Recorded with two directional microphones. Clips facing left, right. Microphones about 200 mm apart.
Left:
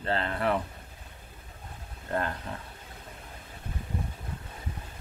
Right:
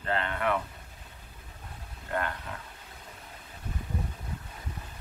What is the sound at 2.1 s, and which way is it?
Speech, 30° left (ahead or behind).